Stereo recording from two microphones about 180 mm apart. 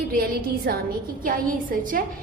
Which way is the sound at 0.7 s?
60° right (ahead or behind).